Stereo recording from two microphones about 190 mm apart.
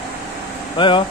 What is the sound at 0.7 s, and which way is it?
Speech, 25° left (ahead or behind).